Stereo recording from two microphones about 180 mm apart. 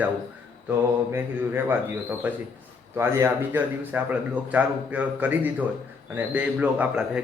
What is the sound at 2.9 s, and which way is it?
Speech, 15° right (ahead or behind).